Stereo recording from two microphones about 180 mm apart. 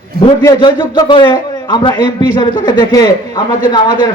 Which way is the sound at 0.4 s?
25° left (ahead or behind).